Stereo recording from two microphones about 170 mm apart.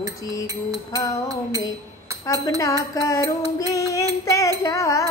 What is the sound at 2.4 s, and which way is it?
Music, 20° left (ahead or behind).